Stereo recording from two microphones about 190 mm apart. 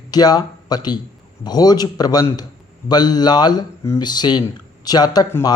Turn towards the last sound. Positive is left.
turn(degrees=20)  # may be behind; listen again after turning